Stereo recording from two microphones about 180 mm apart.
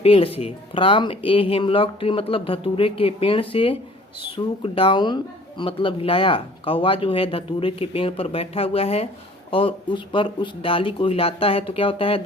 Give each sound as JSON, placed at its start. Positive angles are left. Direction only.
{"t": 0.0, "sound": "speech", "side_deg": 30}